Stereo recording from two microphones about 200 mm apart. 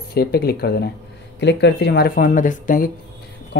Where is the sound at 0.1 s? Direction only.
50° left (ahead or behind).